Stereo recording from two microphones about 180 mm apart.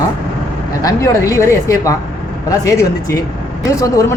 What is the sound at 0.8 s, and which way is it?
A woman's voice, 20° left (ahead or behind).